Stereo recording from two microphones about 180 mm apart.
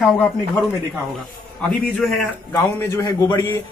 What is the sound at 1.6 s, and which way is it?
Speech, 5° left (ahead or behind).